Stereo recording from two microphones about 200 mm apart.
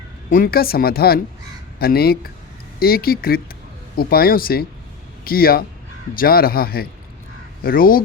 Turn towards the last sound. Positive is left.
turn(degrees=45)  # may be behind; listen again after turning